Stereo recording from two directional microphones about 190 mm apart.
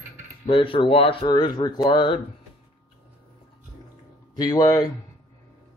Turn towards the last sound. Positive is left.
turn(degrees=25)  # may be behind; listen again after turning